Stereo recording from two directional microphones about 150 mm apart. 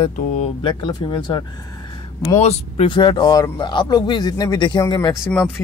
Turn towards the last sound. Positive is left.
turn(degrees=25)  # may be behind; listen again after turning